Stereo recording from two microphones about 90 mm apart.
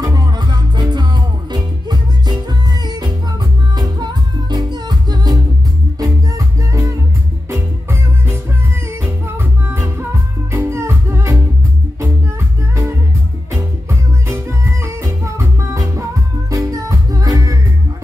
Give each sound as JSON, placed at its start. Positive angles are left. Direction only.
{"t": 0.0, "sound": "music", "side_deg": -45}
{"t": 3.7, "sound": "music", "side_deg": -50}
{"t": 9.0, "sound": "music", "side_deg": -25}
{"t": 13.5, "sound": "music", "side_deg": -30}